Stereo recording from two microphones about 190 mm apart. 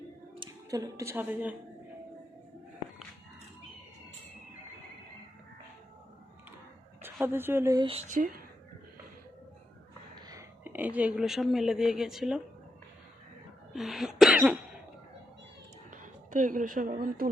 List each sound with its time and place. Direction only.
0.3 s speech: 20° right (ahead or behind)
7.0 s speech: 10° right (ahead or behind)
7.9 s speech: 35° right (ahead or behind)
10.2 s speech: 15° right (ahead or behind)
13.7 s cough: centre (ahead or behind)
15.9 s speech: 40° right (ahead or behind)